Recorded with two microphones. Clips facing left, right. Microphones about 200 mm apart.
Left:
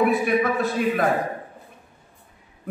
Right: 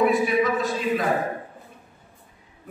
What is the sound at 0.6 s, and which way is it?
Speech, 55° left (ahead or behind).